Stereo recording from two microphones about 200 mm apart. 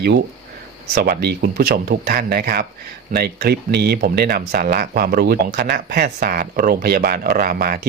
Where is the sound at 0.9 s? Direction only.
50° right (ahead or behind).